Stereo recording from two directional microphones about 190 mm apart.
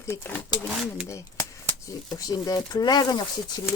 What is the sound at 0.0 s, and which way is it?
Speech, 10° left (ahead or behind).